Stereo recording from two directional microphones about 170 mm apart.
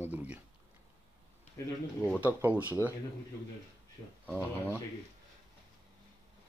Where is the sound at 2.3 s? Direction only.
10° right (ahead or behind).